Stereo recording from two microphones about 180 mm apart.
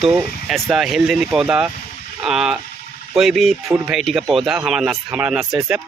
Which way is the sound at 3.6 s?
15° right (ahead or behind).